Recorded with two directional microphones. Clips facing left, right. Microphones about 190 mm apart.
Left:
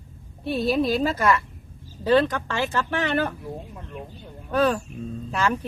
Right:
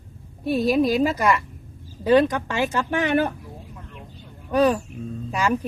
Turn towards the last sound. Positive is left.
turn(degrees=-10)  # may be behind; listen again after turning